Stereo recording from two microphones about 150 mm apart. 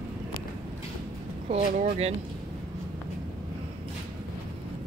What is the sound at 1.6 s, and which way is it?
Speech, 70° right (ahead or behind).